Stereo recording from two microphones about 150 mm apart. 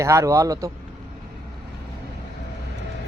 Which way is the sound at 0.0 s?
20° right (ahead or behind).